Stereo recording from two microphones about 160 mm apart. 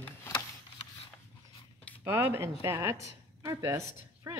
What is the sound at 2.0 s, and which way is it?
A woman's voice, 15° right (ahead or behind).